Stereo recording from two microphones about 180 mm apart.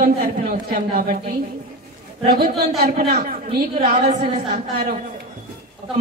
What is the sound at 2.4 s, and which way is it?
Speech, 60° right (ahead or behind).